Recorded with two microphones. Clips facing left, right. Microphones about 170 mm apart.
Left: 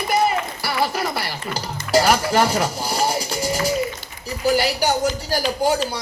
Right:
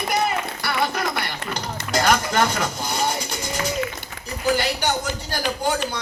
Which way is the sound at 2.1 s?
30° left (ahead or behind).